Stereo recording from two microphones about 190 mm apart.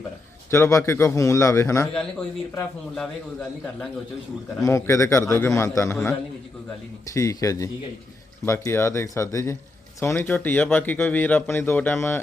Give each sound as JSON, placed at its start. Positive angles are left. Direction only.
{"t": 0.5, "sound": "speech", "side_deg": 15}
{"t": 2.6, "sound": "speech", "side_deg": 5}
{"t": 4.6, "sound": "speech", "side_deg": 15}